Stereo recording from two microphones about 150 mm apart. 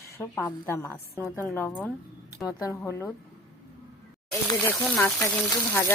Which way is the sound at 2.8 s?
20° left (ahead or behind).